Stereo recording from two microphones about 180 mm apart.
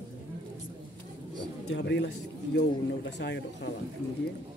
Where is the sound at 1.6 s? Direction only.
75° left (ahead or behind).